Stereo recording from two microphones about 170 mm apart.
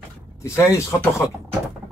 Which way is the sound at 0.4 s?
15° left (ahead or behind).